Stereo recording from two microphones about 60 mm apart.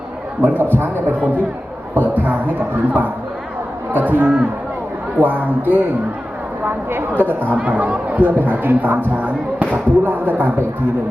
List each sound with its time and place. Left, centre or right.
0.4 s speech: right
2.0 s music: right
3.9 s speech: right
6.7 s a sound: right
7.5 s speech: right